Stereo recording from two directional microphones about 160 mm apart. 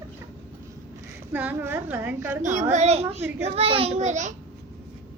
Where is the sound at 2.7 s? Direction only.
45° right (ahead or behind).